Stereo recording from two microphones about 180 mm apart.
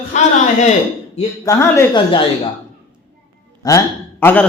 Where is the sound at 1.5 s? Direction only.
15° left (ahead or behind).